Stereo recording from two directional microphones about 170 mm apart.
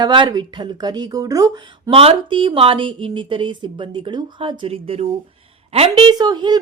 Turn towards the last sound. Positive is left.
turn(degrees=-25)  # may be behind; listen again after turning